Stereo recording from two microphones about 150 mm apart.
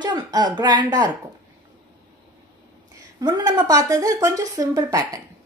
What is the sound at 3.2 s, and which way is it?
A woman's voice, 25° right (ahead or behind).